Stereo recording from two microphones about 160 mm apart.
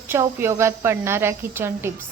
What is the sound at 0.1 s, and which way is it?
A woman's voice, 15° right (ahead or behind).